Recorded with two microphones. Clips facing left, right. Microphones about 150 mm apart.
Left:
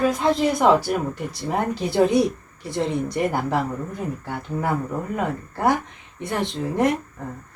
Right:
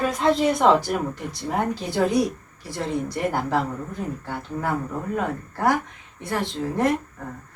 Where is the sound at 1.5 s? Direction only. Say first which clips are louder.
Left 1 dB; 10° left (ahead or behind).